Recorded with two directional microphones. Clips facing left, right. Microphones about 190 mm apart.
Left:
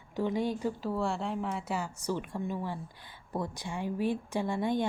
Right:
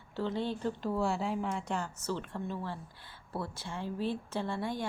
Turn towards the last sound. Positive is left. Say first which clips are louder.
# left 5 dB
turn(degrees=20)  # may be behind; listen again after turning